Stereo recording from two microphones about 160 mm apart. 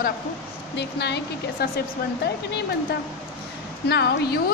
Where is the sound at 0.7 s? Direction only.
90° left.